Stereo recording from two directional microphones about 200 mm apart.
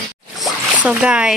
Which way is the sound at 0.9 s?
5° right (ahead or behind).